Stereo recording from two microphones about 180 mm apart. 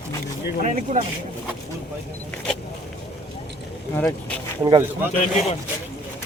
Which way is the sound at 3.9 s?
5° left (ahead or behind).